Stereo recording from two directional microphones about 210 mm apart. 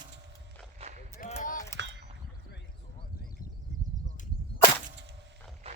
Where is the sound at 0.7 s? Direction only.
30° right (ahead or behind).